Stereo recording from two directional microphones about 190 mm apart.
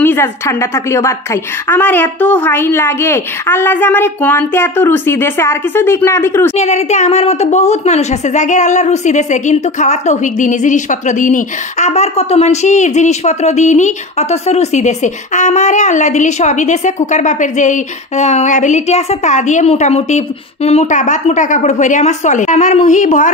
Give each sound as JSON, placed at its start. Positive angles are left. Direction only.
{"t": 0.0, "sound": "a woman's voice", "side_deg": 10}
{"t": 6.5, "sound": "a woman's voice", "side_deg": 35}